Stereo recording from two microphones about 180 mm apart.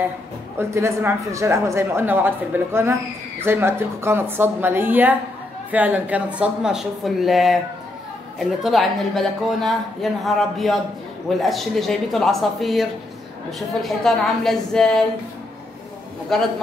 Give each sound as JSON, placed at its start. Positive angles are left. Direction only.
{"t": 0.6, "sound": "a woman's voice", "side_deg": -15}
{"t": 16.3, "sound": "a woman's voice", "side_deg": 0}